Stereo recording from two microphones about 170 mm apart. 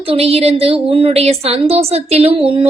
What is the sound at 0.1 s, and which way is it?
A woman's voice, 35° right (ahead or behind).